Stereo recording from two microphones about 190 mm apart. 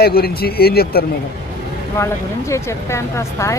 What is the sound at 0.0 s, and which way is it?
A man's voice, 55° left (ahead or behind).